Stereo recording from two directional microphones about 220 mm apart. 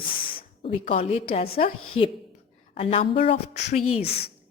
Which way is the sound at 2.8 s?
25° left (ahead or behind).